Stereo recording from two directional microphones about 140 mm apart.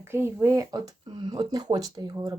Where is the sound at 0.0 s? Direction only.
15° right (ahead or behind).